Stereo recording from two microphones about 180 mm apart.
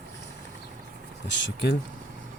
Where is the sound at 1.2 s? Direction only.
75° left (ahead or behind).